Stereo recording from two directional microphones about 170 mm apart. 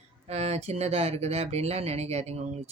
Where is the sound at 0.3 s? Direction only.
40° right (ahead or behind).